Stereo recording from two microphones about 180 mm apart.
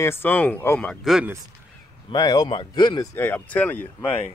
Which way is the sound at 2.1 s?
20° left (ahead or behind).